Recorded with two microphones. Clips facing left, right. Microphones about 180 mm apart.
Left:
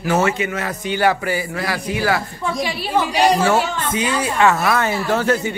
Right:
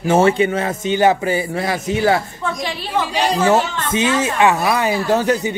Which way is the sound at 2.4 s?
10° left (ahead or behind).